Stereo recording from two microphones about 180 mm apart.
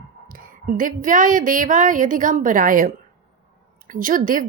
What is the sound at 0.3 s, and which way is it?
A woman's voice, 50° right (ahead or behind).